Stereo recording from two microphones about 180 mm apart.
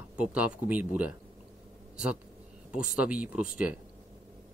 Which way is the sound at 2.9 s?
5° right (ahead or behind).